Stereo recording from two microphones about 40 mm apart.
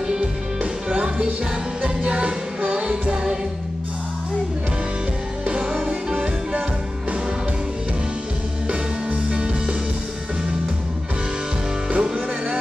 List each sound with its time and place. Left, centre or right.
0.0 s music: centre
5.6 s music: centre
8.6 s music: right
11.9 s music: right